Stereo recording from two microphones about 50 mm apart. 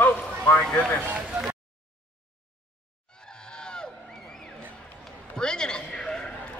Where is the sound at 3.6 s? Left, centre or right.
Centre.